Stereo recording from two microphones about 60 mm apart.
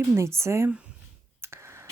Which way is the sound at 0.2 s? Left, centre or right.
Right.